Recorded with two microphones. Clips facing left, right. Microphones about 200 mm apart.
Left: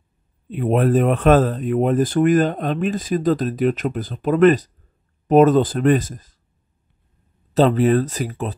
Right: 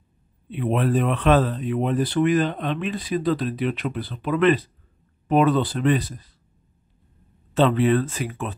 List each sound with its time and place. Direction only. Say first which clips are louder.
0.5 s speech: left 5 dB; 45° left (ahead or behind)
7.5 s speech: left 3 dB; 40° left (ahead or behind)